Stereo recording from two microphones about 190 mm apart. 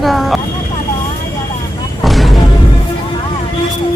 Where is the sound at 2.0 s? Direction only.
Centre (ahead or behind).